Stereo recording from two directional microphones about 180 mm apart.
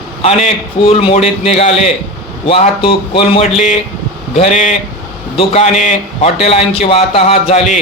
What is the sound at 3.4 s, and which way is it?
A man's voice, 40° left (ahead or behind).